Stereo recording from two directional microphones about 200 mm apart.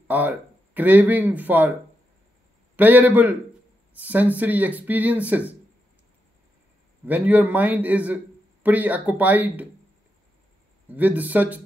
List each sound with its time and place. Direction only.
0.1 s speech: 10° right (ahead or behind)
7.1 s speech: 10° right (ahead or behind)
10.9 s speech: 10° right (ahead or behind)